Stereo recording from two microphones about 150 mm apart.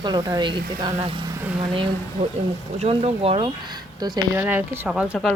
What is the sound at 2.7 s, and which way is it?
Speech, 40° right (ahead or behind).